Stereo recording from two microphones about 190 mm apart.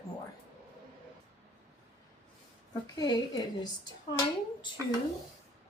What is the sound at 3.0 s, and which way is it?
Speech, 20° left (ahead or behind).